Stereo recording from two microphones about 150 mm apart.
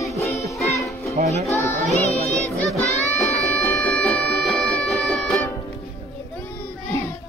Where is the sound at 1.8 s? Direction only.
45° left (ahead or behind).